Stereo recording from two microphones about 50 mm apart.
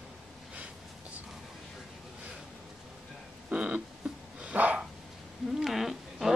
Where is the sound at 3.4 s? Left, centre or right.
Right.